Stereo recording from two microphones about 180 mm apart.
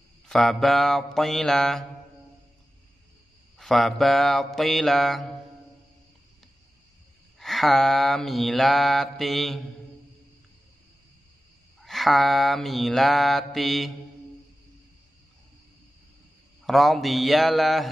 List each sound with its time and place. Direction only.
0.3 s mantra: centre (ahead or behind)
3.5 s mantra: centre (ahead or behind)
7.3 s mantra: centre (ahead or behind)
11.8 s mantra: centre (ahead or behind)
16.6 s mantra: centre (ahead or behind)